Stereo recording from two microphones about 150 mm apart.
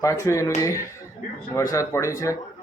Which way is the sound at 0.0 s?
20° left (ahead or behind).